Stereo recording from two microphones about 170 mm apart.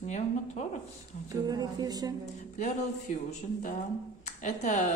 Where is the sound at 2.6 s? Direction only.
40° left (ahead or behind).